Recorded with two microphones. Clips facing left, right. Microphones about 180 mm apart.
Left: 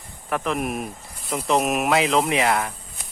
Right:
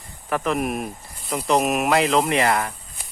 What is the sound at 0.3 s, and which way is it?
Speech, centre (ahead or behind).